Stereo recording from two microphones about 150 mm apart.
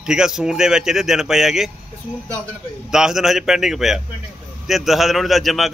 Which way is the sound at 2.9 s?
5° right (ahead or behind).